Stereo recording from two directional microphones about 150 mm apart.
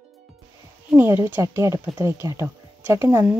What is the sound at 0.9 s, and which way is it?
Speech, 15° right (ahead or behind).